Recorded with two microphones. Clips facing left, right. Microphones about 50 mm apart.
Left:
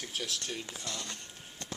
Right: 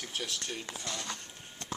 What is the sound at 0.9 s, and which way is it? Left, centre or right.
Speech, right.